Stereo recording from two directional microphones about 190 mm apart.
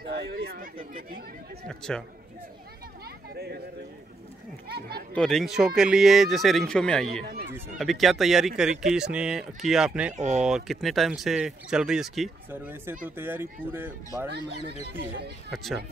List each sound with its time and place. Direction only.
0.1 s chatter: 60° right (ahead or behind)
1.7 s speech: 5° left (ahead or behind)
3.3 s a sound: 55° right (ahead or behind)
4.6 s speech: 55° right (ahead or behind)
5.1 s speech: 5° left (ahead or behind)
10.1 s speech: 40° right (ahead or behind)
10.4 s speech: centre (ahead or behind)
15.0 s speech: 60° right (ahead or behind)
15.5 s speech: centre (ahead or behind)